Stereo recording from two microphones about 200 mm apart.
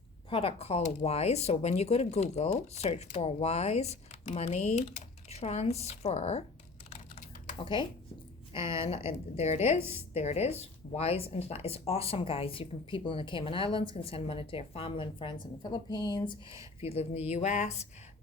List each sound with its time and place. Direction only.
0.3 s speech: 30° left (ahead or behind)
7.6 s speech: 25° left (ahead or behind)